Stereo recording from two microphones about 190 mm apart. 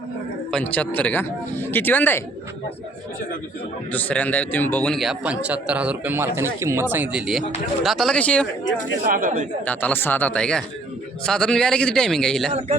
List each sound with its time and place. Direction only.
0.5 s speech: 5° left (ahead or behind)
3.9 s a man's voice: 10° left (ahead or behind)
9.0 s speech: 45° right (ahead or behind)
9.6 s a man's voice: 10° left (ahead or behind)